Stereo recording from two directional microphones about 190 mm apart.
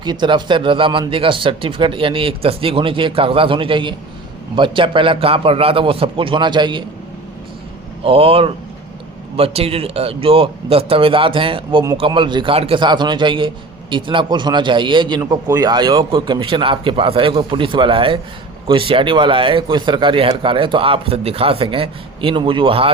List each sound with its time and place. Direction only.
0.0 s a man's voice: 25° right (ahead or behind)
8.0 s a man's voice: 30° right (ahead or behind)